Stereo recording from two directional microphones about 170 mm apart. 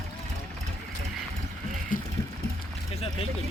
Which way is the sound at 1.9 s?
55° left (ahead or behind).